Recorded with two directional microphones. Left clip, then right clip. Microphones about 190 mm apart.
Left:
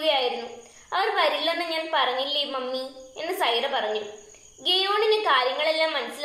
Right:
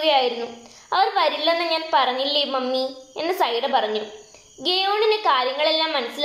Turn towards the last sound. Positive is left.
turn(degrees=-15)  # may be behind; listen again after turning